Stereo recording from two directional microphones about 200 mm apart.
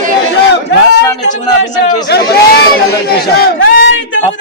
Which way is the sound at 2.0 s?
55° left (ahead or behind).